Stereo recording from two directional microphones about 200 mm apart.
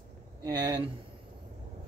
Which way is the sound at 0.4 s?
15° right (ahead or behind).